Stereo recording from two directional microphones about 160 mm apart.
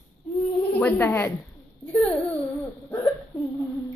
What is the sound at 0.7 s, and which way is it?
Speech, 15° left (ahead or behind).